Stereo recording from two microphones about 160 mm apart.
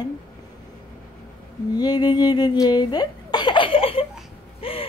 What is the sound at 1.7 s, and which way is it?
Speech, 25° left (ahead or behind).